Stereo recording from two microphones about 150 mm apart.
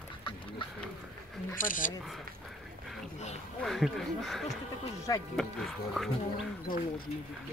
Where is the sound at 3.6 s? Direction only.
Centre (ahead or behind).